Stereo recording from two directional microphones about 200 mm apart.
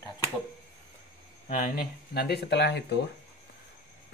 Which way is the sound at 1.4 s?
40° left (ahead or behind).